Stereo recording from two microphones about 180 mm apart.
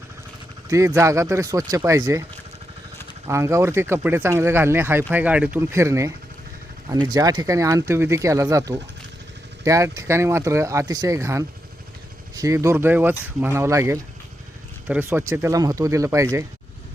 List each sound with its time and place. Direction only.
0.7 s speech: 15° right (ahead or behind)
3.2 s speech: 15° right (ahead or behind)